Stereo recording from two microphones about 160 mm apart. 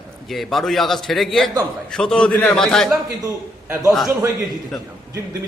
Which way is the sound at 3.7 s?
20° right (ahead or behind).